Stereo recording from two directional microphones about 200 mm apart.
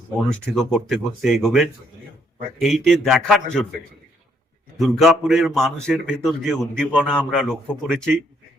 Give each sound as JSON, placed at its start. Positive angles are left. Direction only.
{"t": 0.5, "sound": "a man's voice", "side_deg": 0}
{"t": 4.8, "sound": "a man's voice", "side_deg": 0}